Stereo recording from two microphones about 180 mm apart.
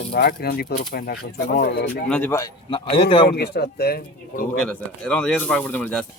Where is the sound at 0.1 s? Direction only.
60° left (ahead or behind).